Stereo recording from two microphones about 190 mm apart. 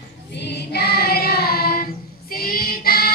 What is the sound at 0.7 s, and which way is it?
Child singing, 55° left (ahead or behind).